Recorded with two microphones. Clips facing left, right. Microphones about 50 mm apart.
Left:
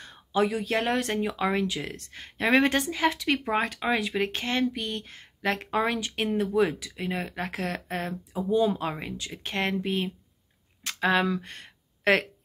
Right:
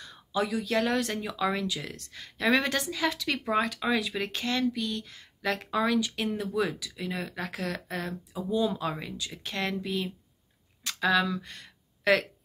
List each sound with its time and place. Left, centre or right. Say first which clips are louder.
0.0 s speech: left 4 dB; left